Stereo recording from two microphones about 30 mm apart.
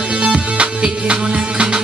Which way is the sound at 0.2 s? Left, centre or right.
Right.